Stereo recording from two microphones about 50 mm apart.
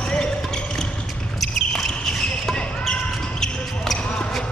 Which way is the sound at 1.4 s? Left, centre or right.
Centre.